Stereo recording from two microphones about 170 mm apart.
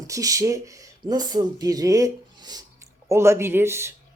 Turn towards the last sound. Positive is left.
turn(degrees=-15)  # may be behind; listen again after turning